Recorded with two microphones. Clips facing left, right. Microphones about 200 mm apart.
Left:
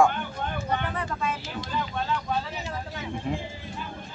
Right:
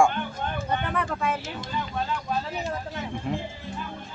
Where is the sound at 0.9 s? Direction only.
60° right (ahead or behind).